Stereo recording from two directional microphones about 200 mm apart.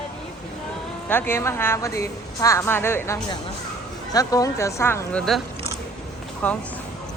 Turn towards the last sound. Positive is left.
turn(degrees=5)  # may be behind; listen again after turning